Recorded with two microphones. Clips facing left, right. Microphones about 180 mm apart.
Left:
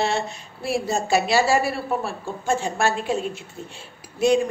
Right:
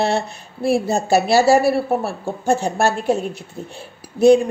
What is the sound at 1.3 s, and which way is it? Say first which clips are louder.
Speech: right 7 dB; 40° right (ahead or behind).